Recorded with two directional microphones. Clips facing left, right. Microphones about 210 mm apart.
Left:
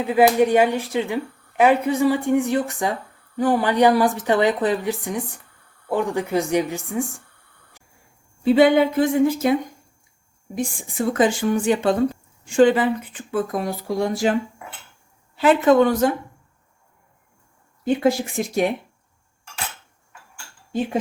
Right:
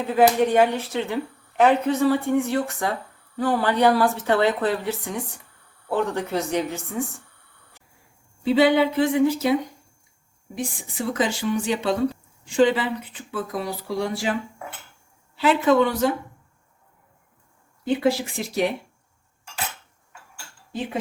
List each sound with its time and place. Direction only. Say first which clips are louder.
0.0 s a woman's voice: left 2 dB; 10° left (ahead or behind)
8.4 s speech: left 3 dB; 50° left (ahead or behind)
10.9 s speech: left 6 dB; 50° left (ahead or behind)
15.4 s speech: left 3 dB; 50° left (ahead or behind)
17.8 s speech: left 2 dB; 50° left (ahead or behind)